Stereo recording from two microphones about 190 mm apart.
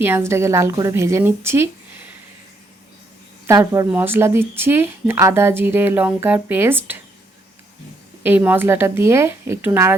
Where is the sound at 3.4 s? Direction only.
15° right (ahead or behind).